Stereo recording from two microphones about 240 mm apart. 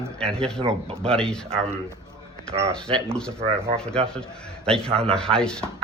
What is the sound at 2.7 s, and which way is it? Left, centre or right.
A man's voice, centre.